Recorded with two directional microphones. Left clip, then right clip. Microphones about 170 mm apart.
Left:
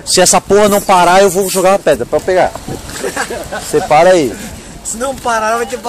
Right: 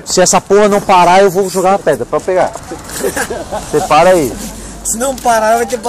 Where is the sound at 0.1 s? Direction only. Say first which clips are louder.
Even; 20° left (ahead or behind).